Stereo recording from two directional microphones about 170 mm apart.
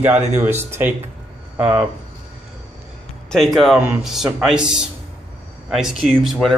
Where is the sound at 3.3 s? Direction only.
Centre (ahead or behind).